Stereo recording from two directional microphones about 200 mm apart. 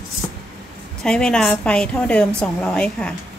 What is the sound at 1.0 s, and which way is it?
Speech, 5° left (ahead or behind).